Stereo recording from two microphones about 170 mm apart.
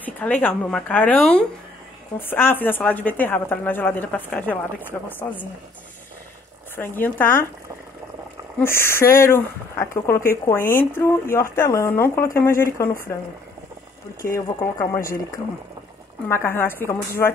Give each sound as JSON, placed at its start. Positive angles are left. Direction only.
{"t": 0.0, "sound": "speech", "side_deg": 10}
{"t": 6.8, "sound": "speech", "side_deg": 10}
{"t": 8.5, "sound": "speech", "side_deg": 15}
{"t": 14.3, "sound": "speech", "side_deg": 15}
{"t": 16.3, "sound": "speech", "side_deg": 15}